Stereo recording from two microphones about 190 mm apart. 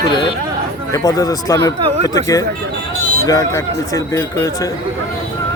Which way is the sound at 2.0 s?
20° left (ahead or behind).